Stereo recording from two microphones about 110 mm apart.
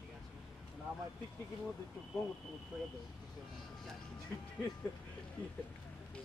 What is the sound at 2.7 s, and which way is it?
Speech, 5° right (ahead or behind).